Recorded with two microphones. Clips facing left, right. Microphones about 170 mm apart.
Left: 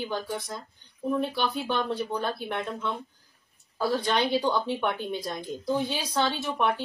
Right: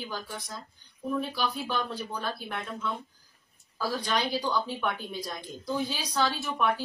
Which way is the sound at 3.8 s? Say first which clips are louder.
Left 4 dB; 25° left (ahead or behind).